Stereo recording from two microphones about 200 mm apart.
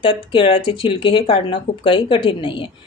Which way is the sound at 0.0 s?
25° left (ahead or behind).